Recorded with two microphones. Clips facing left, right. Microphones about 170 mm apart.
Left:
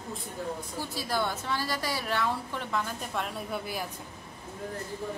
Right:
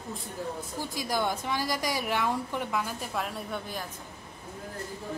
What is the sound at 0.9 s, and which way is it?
A woman's voice, 15° right (ahead or behind).